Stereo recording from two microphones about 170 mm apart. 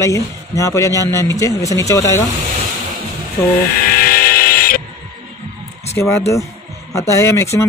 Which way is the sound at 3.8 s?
60° left (ahead or behind).